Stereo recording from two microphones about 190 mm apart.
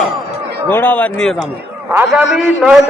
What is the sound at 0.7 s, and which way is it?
A man's voice, 10° left (ahead or behind).